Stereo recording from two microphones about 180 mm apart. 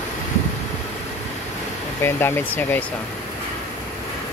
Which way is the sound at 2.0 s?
15° left (ahead or behind).